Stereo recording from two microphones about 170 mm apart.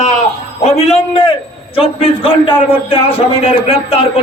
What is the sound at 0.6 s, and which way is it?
A man's voice, 40° left (ahead or behind).